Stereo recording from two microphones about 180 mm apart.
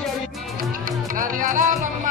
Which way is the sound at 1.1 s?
50° right (ahead or behind).